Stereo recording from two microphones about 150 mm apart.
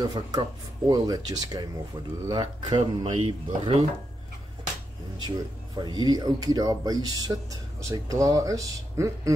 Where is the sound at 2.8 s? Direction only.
45° right (ahead or behind).